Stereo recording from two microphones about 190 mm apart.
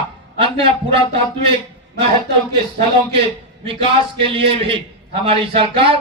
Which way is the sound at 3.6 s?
30° right (ahead or behind).